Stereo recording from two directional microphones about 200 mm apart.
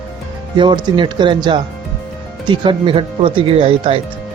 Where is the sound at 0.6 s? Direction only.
25° right (ahead or behind).